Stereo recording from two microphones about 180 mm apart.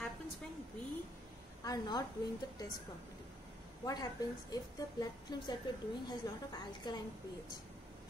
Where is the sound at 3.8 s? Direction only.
20° left (ahead or behind).